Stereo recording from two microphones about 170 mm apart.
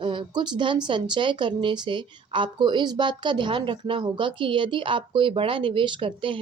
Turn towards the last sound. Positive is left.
turn(degrees=-30)  # may be behind; listen again after turning